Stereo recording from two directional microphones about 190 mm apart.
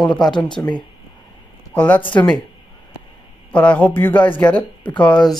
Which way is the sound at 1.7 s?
10° left (ahead or behind).